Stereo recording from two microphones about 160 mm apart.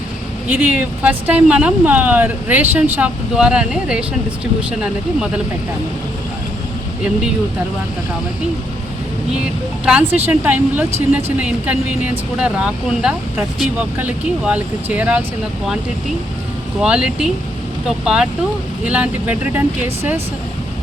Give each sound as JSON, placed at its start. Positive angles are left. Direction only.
{"t": 0.5, "sound": "speech", "side_deg": -10}
{"t": 9.8, "sound": "speech", "side_deg": -10}
{"t": 16.8, "sound": "speech", "side_deg": -5}